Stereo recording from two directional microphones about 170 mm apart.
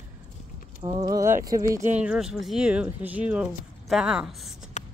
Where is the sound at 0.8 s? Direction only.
25° right (ahead or behind).